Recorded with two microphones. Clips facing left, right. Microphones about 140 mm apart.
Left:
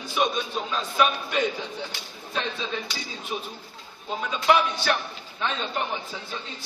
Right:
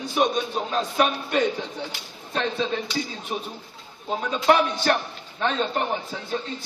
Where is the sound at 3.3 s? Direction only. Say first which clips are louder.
Right 1 dB; 45° right (ahead or behind).